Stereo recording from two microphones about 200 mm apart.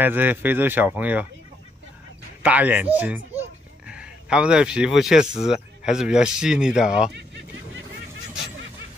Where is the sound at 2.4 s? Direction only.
10° right (ahead or behind).